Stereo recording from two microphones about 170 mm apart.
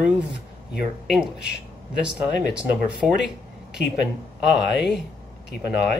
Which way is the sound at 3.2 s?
5° right (ahead or behind).